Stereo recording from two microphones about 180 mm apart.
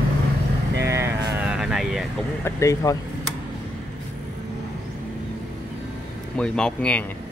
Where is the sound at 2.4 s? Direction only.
20° left (ahead or behind).